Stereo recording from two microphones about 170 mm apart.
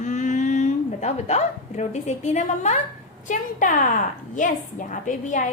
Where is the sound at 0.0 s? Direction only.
45° left (ahead or behind).